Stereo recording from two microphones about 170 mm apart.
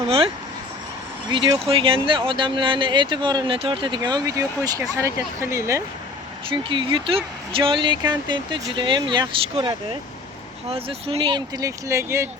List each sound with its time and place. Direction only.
1.3 s speech: 30° right (ahead or behind)
6.5 s speech: 30° right (ahead or behind)